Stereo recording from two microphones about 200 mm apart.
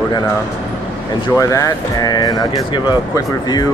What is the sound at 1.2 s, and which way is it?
Speech, 15° left (ahead or behind).